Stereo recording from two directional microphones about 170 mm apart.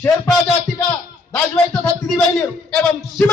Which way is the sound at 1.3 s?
5° left (ahead or behind).